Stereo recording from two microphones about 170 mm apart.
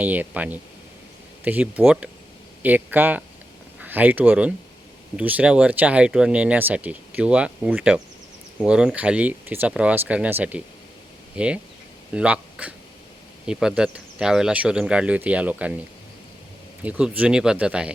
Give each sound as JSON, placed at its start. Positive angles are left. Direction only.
{"t": 0.0, "sound": "speech", "side_deg": -10}
{"t": 16.8, "sound": "speech", "side_deg": -5}